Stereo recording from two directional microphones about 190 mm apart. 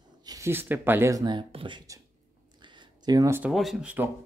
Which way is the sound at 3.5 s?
Centre (ahead or behind).